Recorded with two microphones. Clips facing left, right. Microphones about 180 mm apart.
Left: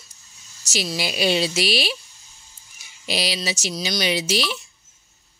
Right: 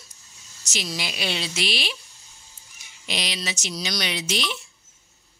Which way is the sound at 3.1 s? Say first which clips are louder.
Left 5 dB; 35° left (ahead or behind).